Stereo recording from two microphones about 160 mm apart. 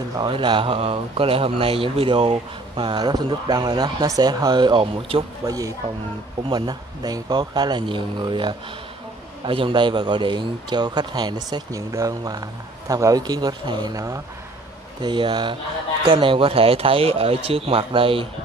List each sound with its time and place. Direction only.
0.1 s speech: 30° right (ahead or behind)
5.4 s a man's voice: 20° right (ahead or behind)